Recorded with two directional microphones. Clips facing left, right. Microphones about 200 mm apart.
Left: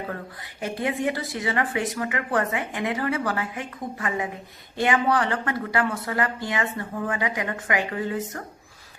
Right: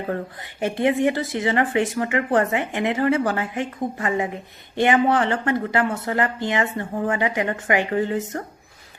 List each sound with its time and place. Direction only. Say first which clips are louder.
0.6 s speech: right 6 dB; 25° right (ahead or behind)